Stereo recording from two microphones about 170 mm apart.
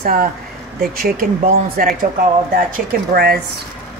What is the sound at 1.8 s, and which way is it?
Speech, 55° right (ahead or behind).